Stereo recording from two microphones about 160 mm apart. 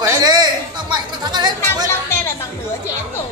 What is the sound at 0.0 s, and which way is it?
Music, 20° right (ahead or behind).